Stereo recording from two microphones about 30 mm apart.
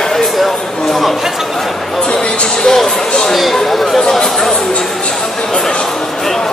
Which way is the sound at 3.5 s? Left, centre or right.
Centre.